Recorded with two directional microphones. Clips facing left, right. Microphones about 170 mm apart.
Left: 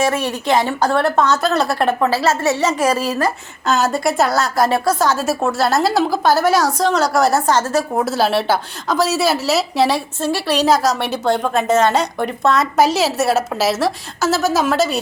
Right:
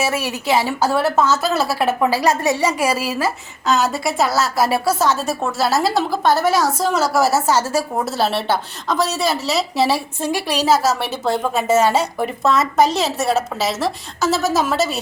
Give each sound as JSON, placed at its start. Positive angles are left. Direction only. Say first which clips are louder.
{"t": 0.0, "sound": "a woman's voice", "louder": "left 3 dB", "side_deg": -5}
{"t": 10.2, "sound": "a woman's voice", "louder": "left 2 dB", "side_deg": -15}